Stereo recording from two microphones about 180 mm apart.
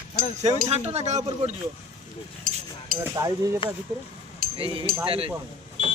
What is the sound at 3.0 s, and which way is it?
Speech, 20° right (ahead or behind).